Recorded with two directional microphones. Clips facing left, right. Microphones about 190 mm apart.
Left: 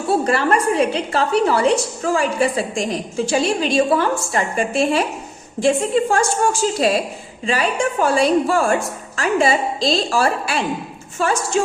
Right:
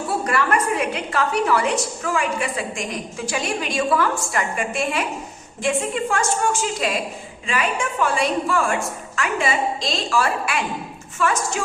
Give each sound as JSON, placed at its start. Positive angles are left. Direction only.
{"t": 0.1, "sound": "a woman's voice", "side_deg": 30}